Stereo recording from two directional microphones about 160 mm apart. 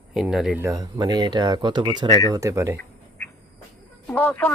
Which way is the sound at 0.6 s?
20° right (ahead or behind).